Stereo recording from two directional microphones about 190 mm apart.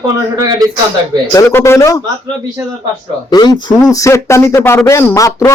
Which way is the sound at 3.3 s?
20° left (ahead or behind).